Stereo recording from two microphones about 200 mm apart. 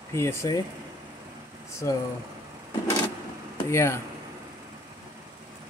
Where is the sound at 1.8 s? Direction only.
15° left (ahead or behind).